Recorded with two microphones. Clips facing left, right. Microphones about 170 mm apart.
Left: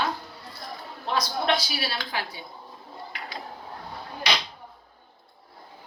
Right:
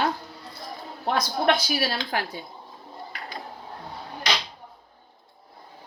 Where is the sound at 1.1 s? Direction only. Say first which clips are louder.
Right 3 dB; 50° right (ahead or behind).